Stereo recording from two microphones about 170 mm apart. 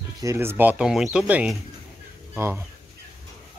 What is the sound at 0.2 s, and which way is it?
Speech, 15° right (ahead or behind).